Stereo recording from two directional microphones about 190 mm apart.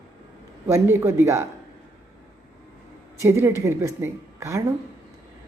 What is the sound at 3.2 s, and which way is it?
A woman's voice, 15° right (ahead or behind).